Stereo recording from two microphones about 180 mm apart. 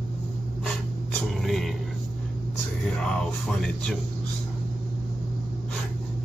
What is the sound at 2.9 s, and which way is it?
Speech, 5° left (ahead or behind).